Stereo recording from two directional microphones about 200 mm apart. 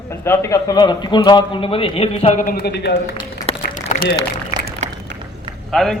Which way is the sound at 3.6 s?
40° left (ahead or behind).